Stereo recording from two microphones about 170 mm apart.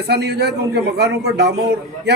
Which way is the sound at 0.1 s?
70° right (ahead or behind).